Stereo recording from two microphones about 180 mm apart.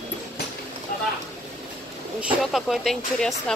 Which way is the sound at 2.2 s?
Centre (ahead or behind).